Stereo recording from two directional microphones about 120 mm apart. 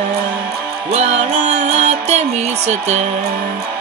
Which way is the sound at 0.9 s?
65° right (ahead or behind).